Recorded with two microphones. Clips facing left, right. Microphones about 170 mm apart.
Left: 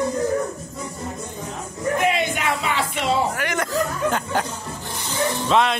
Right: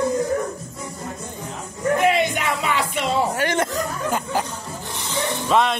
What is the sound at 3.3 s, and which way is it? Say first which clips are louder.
Speech: right 4 dB; 30° right (ahead or behind).